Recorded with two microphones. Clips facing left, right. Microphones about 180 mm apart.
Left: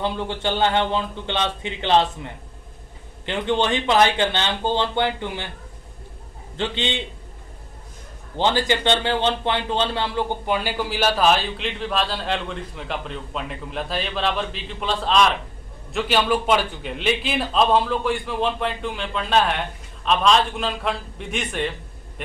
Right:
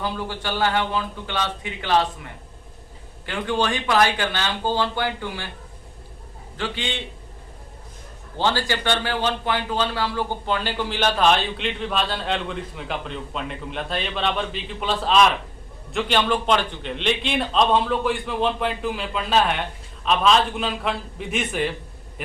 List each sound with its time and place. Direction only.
0.0 s a man's voice: 25° left (ahead or behind)
6.6 s a man's voice: 25° left (ahead or behind)
8.4 s speech: 20° left (ahead or behind); by 21.7 s 5° right (ahead or behind)